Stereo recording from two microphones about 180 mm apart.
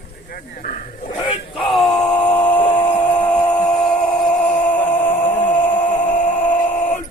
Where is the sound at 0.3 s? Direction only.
55° left (ahead or behind).